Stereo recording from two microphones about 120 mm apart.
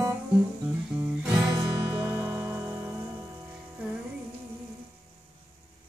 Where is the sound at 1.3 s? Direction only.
35° right (ahead or behind).